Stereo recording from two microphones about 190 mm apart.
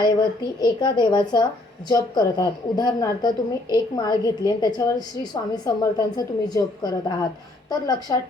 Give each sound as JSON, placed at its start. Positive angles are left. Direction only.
{"t": 0.0, "sound": "a woman's voice", "side_deg": 20}